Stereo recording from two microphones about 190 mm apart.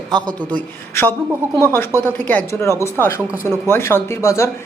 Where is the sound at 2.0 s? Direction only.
10° left (ahead or behind).